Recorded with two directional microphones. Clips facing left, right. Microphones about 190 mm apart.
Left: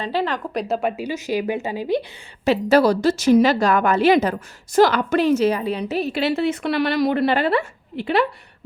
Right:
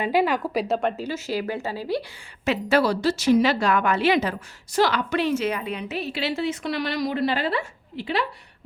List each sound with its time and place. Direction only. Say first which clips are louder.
0.0 s a woman's voice: right 2 dB; 10° right (ahead or behind)
0.8 s speech: left 2 dB; 10° left (ahead or behind)
2.4 s a woman's voice: left 5 dB; 40° left (ahead or behind); by 8.3 s 55° left (ahead or behind)